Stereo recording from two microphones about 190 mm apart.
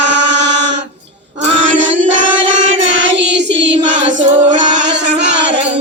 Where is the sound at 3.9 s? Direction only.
70° right (ahead or behind).